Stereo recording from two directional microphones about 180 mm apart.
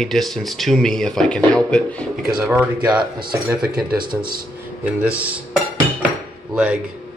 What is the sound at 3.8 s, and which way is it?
Speech, 55° right (ahead or behind).